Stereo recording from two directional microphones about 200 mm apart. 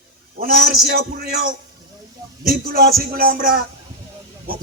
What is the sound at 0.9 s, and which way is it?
A man's voice, 45° right (ahead or behind).